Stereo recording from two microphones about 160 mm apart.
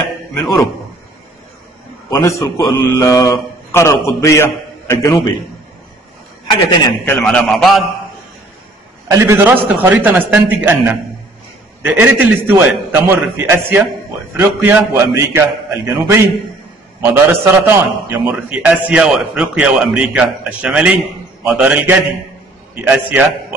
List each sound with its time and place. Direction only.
0.3 s a man's voice: 15° left (ahead or behind)
2.0 s a man's voice: 20° left (ahead or behind)
7.1 s a man's voice: 5° left (ahead or behind)
9.1 s a man's voice: 15° right (ahead or behind)